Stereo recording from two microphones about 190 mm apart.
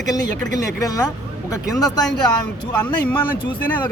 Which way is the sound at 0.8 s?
20° left (ahead or behind).